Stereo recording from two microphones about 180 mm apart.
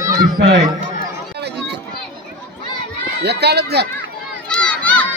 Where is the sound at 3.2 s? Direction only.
65° right (ahead or behind).